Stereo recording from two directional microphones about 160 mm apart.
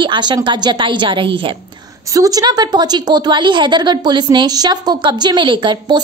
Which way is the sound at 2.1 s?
20° right (ahead or behind).